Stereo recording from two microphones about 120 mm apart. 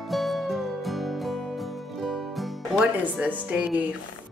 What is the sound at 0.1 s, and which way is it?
Music, centre (ahead or behind).